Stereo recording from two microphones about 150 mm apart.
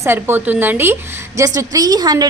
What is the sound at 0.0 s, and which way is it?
A woman's voice, 15° right (ahead or behind).